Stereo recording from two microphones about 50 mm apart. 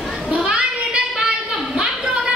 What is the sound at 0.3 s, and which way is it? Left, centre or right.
Children playing, right.